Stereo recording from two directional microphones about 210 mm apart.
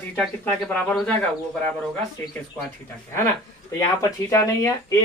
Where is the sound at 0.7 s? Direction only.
5° left (ahead or behind).